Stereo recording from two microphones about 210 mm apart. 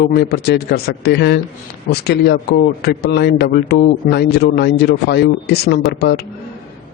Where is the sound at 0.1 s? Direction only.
50° left (ahead or behind).